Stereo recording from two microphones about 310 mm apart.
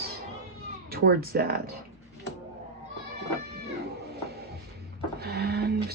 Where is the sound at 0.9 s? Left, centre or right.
Right.